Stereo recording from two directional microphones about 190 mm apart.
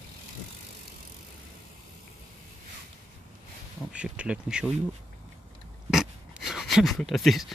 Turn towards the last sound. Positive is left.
turn(degrees=0)  # may be behind; listen again after turning